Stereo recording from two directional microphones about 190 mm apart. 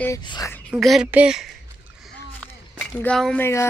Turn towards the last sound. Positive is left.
turn(degrees=10)  # may be behind; listen again after turning